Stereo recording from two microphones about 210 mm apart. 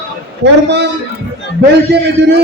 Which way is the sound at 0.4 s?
55° right (ahead or behind).